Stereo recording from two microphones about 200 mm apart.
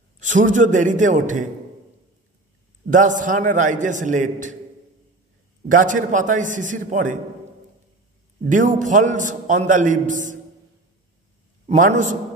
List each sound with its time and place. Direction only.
0.2 s a man's voice: 40° right (ahead or behind)
2.9 s a man's voice: 40° right (ahead or behind)
5.7 s a man's voice: 40° right (ahead or behind)
8.5 s a man's voice: 40° right (ahead or behind)
11.6 s a man's voice: 40° right (ahead or behind)